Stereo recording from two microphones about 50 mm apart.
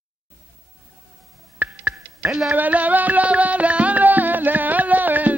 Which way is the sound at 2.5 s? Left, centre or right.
Right.